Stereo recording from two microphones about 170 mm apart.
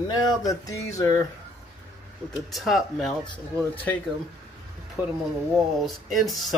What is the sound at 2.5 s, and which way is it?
Speech, centre (ahead or behind).